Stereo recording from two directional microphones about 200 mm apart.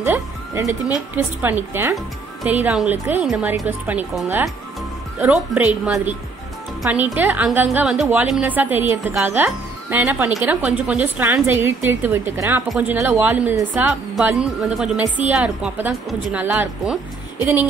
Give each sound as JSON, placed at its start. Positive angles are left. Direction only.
{"t": 0.0, "sound": "music", "side_deg": -10}
{"t": 0.9, "sound": "a woman's voice", "side_deg": -10}